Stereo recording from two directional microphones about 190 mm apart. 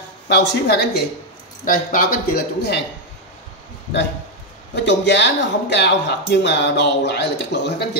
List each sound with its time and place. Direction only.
0.3 s speech: 60° left (ahead or behind)
1.6 s speech: 45° left (ahead or behind)
4.8 s speech: 65° left (ahead or behind)